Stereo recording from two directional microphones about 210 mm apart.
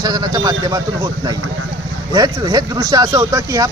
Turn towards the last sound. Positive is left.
turn(degrees=-15)  # may be behind; listen again after turning